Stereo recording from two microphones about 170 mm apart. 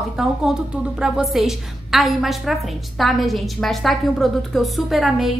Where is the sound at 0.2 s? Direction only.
5° right (ahead or behind).